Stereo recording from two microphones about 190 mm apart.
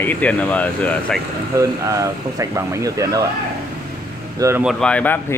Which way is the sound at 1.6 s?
15° right (ahead or behind).